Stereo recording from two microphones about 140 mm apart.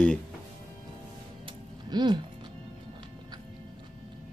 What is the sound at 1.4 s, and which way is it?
Music, 30° right (ahead or behind).